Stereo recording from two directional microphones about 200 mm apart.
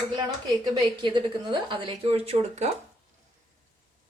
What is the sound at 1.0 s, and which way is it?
Speech, 25° right (ahead or behind).